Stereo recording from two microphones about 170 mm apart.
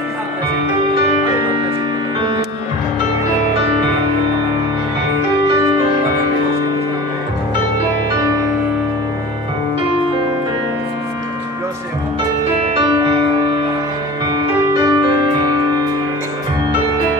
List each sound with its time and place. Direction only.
12.7 s music: 30° right (ahead or behind)
14.3 s music: 25° right (ahead or behind)